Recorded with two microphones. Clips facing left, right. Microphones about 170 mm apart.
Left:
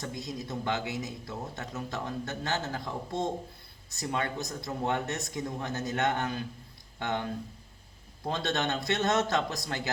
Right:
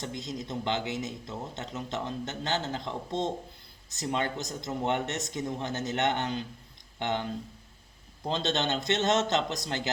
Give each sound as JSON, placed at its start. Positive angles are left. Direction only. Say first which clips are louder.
{"t": 0.1, "sound": "speech", "louder": "right 1 dB", "side_deg": -20}
{"t": 8.3, "sound": "speech", "louder": "right 1 dB", "side_deg": -25}